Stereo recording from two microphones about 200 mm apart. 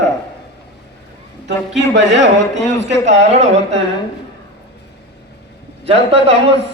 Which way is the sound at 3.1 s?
35° right (ahead or behind).